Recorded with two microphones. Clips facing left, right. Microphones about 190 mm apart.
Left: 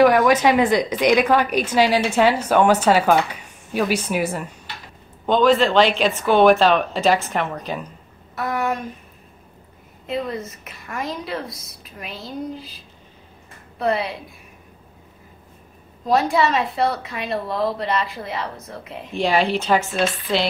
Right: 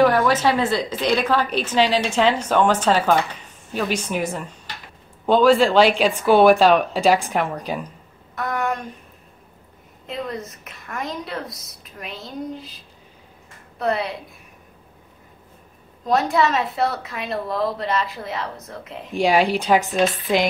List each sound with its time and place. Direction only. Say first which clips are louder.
0.0 s a woman's voice: left 2 dB; 10° left (ahead or behind)
5.2 s speech: right 1 dB; 10° right (ahead or behind)
8.4 s speech: left 1 dB; 5° left (ahead or behind)
10.0 s a woman's voice: left 3 dB; centre (ahead or behind)
16.1 s a woman's voice: left 1 dB; centre (ahead or behind)
19.1 s speech: right 2 dB; 10° right (ahead or behind)